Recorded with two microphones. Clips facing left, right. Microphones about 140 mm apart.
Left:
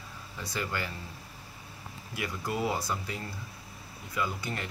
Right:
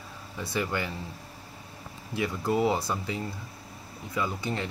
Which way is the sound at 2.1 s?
25° right (ahead or behind).